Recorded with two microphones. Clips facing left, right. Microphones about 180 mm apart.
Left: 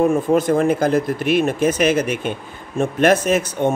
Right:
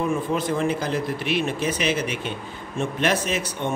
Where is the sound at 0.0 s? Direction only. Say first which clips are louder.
Left 8 dB; 45° left (ahead or behind).